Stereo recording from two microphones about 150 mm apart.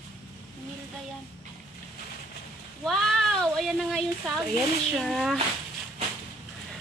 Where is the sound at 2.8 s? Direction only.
Centre (ahead or behind).